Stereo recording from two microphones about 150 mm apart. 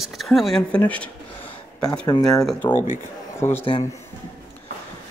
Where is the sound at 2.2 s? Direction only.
5° left (ahead or behind).